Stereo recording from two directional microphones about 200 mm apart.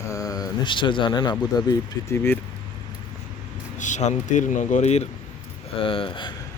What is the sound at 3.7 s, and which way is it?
Speech, 40° left (ahead or behind).